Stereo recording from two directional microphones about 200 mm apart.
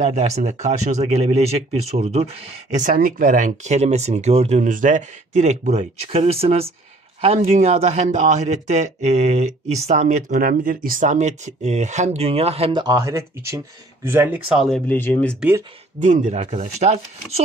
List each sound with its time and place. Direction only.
0.0 s speech: 35° right (ahead or behind); by 15.3 s 10° left (ahead or behind)
16.0 s speech: 35° right (ahead or behind)